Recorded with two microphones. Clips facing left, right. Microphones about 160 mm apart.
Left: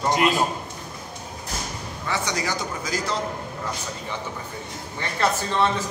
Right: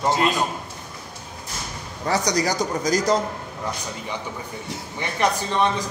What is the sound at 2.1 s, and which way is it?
A man's voice, 40° right (ahead or behind).